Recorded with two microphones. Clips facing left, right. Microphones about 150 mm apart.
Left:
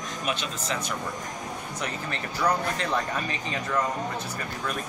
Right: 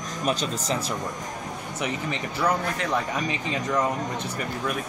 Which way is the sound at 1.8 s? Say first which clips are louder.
Right 5 dB; 10° right (ahead or behind).